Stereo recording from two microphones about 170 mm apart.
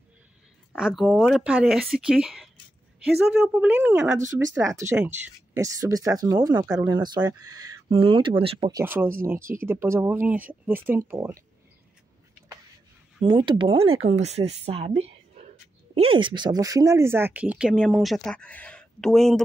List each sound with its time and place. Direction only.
0.7 s speech: centre (ahead or behind); by 7.7 s 20° right (ahead or behind)
7.9 s a woman's voice: 35° right (ahead or behind)
8.8 s speech: 10° right (ahead or behind)
13.2 s a woman's voice: 30° right (ahead or behind); by 19.4 s 5° left (ahead or behind)